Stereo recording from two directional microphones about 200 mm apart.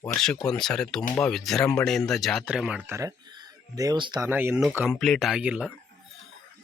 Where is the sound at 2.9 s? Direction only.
15° right (ahead or behind).